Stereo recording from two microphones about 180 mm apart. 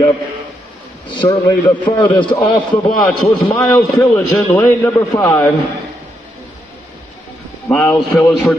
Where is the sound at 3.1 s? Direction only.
5° left (ahead or behind).